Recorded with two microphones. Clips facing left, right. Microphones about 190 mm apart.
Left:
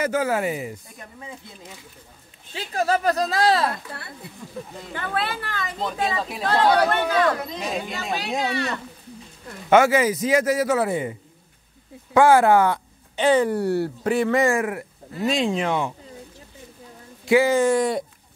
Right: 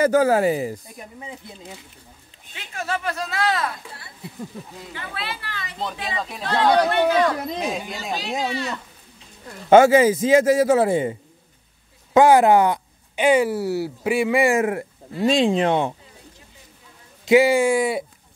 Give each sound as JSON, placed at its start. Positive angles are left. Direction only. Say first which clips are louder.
{"t": 0.0, "sound": "speech", "louder": "right 6 dB", "side_deg": -35}
{"t": 2.5, "sound": "speech", "louder": "left 6 dB", "side_deg": 35}
{"t": 4.9, "sound": "speech", "louder": "left 6 dB", "side_deg": 50}
{"t": 6.1, "sound": "speech", "louder": "left 1 dB", "side_deg": 5}
{"t": 6.4, "sound": "speech", "louder": "even", "side_deg": 50}
{"t": 7.6, "sound": "speech", "louder": "right 1 dB", "side_deg": 0}
{"t": 9.7, "sound": "a man's voice", "louder": "right 4 dB", "side_deg": -30}
{"t": 17.2, "sound": "speech", "louder": "right 2 dB", "side_deg": -20}